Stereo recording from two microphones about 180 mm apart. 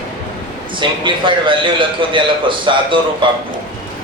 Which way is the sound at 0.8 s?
25° right (ahead or behind).